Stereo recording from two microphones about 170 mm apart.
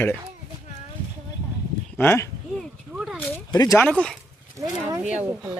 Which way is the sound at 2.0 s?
15° left (ahead or behind).